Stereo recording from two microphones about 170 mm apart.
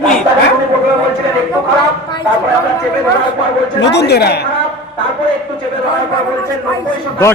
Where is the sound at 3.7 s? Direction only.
80° left.